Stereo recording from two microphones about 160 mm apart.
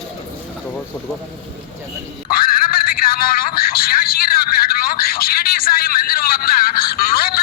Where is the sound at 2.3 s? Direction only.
65° left (ahead or behind).